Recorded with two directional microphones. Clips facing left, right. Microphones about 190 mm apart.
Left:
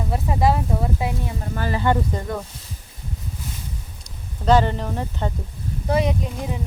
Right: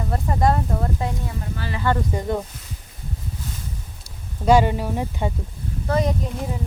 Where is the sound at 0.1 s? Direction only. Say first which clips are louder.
Even; 5° left (ahead or behind).